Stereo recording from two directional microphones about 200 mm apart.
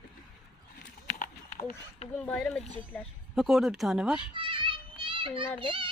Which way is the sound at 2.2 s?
5° left (ahead or behind).